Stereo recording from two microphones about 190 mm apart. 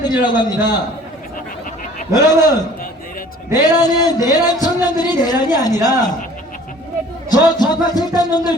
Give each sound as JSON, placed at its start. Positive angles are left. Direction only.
{"t": 0.0, "sound": "speech", "side_deg": 20}
{"t": 2.1, "sound": "speech", "side_deg": 20}
{"t": 3.7, "sound": "speech", "side_deg": 20}
{"t": 7.3, "sound": "speech", "side_deg": 20}